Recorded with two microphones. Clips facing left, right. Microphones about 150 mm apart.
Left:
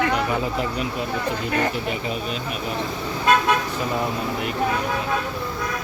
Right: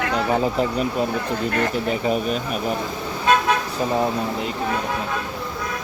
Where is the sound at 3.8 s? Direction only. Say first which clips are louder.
Right 3 dB; 30° right (ahead or behind).